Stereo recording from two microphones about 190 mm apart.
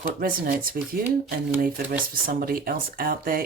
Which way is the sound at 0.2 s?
50° right (ahead or behind).